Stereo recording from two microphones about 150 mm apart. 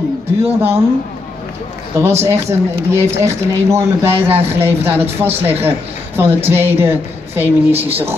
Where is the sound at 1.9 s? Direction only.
15° right (ahead or behind).